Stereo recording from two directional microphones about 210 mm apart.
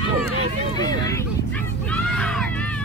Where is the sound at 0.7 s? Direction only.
20° left (ahead or behind).